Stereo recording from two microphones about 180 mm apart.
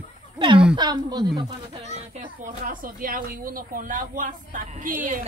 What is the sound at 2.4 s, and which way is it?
Speech, 50° right (ahead or behind).